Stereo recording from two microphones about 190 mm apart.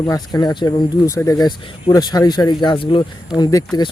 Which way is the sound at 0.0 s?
20° left (ahead or behind).